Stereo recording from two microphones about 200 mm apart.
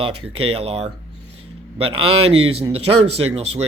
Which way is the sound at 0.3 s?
30° right (ahead or behind).